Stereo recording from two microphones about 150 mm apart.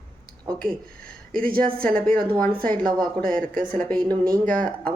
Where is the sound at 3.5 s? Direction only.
70° right (ahead or behind).